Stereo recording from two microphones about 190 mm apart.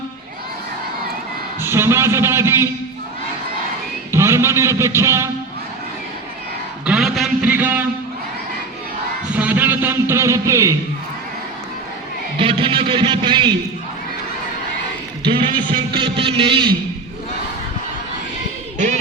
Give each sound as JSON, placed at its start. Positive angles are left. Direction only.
{"t": 1.6, "sound": "a man's voice", "side_deg": -15}
{"t": 4.1, "sound": "a man's voice", "side_deg": -15}
{"t": 6.8, "sound": "a man's voice", "side_deg": -5}
{"t": 9.3, "sound": "a man's voice", "side_deg": -10}
{"t": 12.4, "sound": "speech", "side_deg": -25}
{"t": 15.3, "sound": "music", "side_deg": -25}